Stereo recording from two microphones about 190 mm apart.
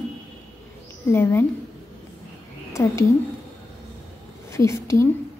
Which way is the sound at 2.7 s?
15° left (ahead or behind).